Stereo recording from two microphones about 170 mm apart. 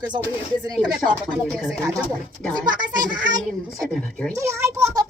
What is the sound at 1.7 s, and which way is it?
A child's voice, 20° right (ahead or behind).